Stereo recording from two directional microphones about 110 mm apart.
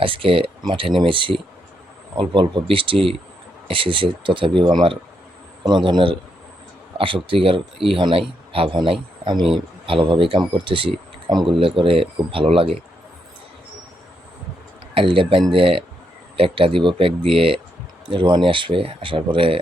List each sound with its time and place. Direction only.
0.0 s speech: 55° right (ahead or behind)
14.9 s speech: 55° right (ahead or behind)